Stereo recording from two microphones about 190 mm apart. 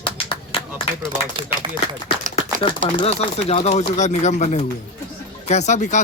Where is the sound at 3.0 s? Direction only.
30° left (ahead or behind).